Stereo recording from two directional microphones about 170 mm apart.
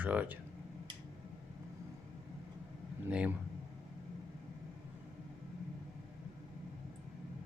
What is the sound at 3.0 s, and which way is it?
Speech, 5° right (ahead or behind).